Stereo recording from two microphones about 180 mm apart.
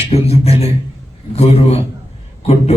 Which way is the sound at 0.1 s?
35° left (ahead or behind).